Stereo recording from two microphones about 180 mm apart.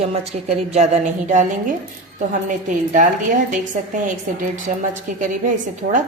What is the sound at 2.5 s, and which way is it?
A woman's voice, 45° right (ahead or behind).